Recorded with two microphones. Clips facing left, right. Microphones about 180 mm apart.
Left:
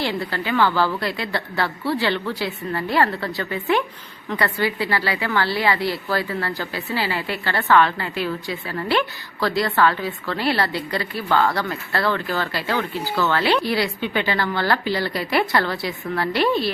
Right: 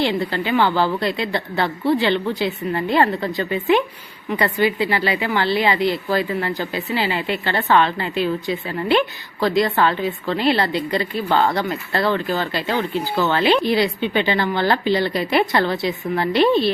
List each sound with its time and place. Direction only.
0.0 s a woman's voice: 20° right (ahead or behind)